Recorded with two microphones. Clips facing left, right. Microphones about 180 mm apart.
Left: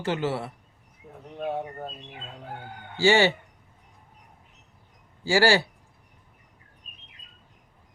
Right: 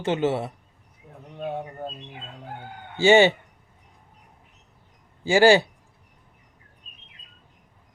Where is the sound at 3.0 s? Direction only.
20° right (ahead or behind).